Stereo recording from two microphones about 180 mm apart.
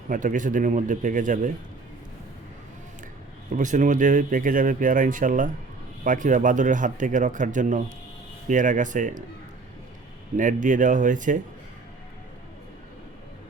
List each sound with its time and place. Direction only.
0.1 s speech: 45° right (ahead or behind)
3.5 s speech: 45° right (ahead or behind)
10.3 s speech: 45° right (ahead or behind)